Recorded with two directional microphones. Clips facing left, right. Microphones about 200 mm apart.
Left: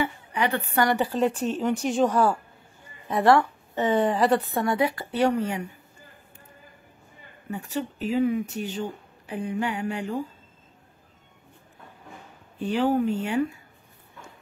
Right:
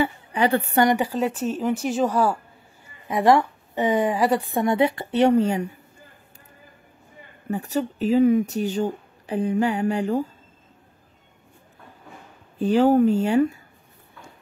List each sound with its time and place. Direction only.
0.0 s a woman's voice: 30° right (ahead or behind)
0.8 s a woman's voice: 10° right (ahead or behind); by 5.8 s 30° right (ahead or behind)
7.5 s speech: 40° right (ahead or behind)
12.5 s speech: 40° right (ahead or behind)